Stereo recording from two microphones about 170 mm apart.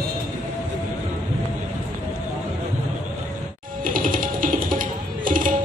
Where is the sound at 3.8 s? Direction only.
55° right (ahead or behind).